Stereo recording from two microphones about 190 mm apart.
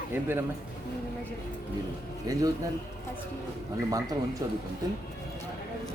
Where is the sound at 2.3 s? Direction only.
20° right (ahead or behind).